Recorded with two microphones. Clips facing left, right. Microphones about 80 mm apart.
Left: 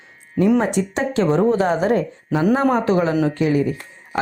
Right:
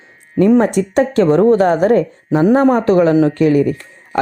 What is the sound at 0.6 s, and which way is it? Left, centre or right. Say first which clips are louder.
Speech: right 7 dB; right.